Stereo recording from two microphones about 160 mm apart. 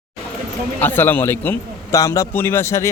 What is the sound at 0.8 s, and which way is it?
Speech, 10° left (ahead or behind).